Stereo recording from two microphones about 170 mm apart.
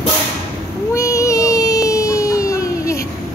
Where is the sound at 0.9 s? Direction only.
20° left (ahead or behind).